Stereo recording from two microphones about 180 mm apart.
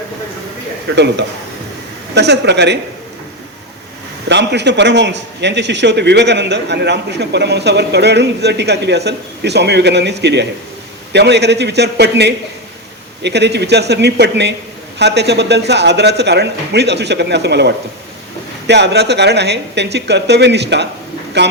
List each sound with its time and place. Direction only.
0.9 s a man's voice: 70° right (ahead or behind)
4.3 s a man's voice: 75° right (ahead or behind)